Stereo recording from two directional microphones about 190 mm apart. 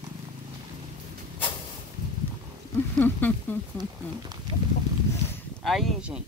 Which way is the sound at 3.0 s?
10° left (ahead or behind).